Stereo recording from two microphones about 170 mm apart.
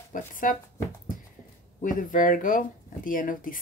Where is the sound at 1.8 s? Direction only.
50° left (ahead or behind).